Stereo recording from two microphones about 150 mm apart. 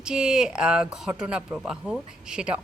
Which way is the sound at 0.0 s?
5° right (ahead or behind).